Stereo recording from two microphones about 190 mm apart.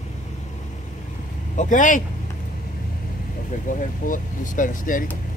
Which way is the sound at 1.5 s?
40° left (ahead or behind).